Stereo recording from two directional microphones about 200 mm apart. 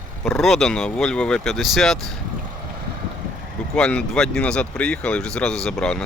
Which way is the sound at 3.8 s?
5° left (ahead or behind).